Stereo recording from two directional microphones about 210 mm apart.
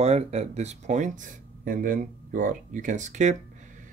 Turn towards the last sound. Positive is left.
turn(degrees=-35)  # may be behind; listen again after turning